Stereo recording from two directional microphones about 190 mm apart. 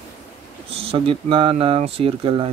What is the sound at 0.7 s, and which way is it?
Speech, 30° right (ahead or behind).